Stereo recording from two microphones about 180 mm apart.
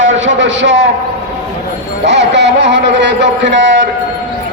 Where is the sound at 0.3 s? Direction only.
90° right.